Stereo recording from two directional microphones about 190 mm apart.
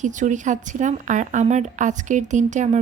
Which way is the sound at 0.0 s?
40° right (ahead or behind).